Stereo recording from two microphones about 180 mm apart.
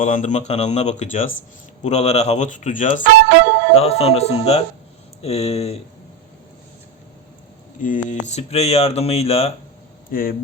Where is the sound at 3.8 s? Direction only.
35° left (ahead or behind).